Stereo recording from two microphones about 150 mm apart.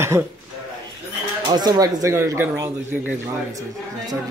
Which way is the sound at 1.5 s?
25° right (ahead or behind).